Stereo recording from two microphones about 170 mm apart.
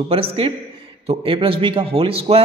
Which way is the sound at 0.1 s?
35° right (ahead or behind).